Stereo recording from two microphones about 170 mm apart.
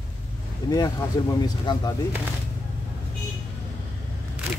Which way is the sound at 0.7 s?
25° left (ahead or behind).